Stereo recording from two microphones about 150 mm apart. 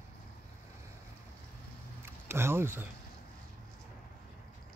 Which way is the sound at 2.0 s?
15° right (ahead or behind).